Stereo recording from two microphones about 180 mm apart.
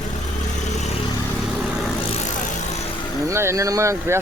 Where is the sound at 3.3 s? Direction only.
15° right (ahead or behind).